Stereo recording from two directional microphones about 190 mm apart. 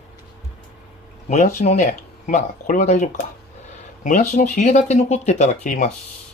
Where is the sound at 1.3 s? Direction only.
40° left (ahead or behind).